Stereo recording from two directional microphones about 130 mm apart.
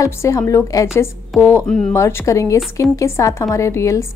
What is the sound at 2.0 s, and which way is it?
A woman's voice, 20° left (ahead or behind).